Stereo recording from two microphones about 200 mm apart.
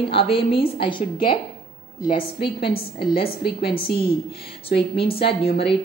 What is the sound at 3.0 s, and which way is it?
Speech, 50° left (ahead or behind).